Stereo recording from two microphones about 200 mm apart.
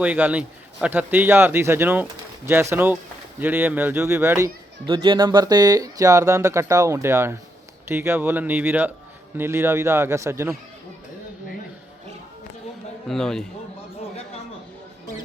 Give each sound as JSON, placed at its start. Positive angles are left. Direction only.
{"t": 0.0, "sound": "speech", "side_deg": -10}
{"t": 13.1, "sound": "a man's voice", "side_deg": 0}